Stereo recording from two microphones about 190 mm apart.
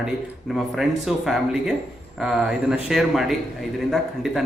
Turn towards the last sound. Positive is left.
turn(degrees=0)  # may be behind; listen again after turning